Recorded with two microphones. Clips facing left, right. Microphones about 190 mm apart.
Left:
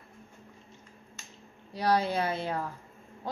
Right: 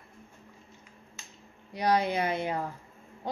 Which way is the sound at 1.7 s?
15° right (ahead or behind).